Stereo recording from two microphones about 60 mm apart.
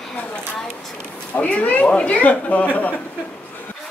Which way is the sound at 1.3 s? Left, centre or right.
Left.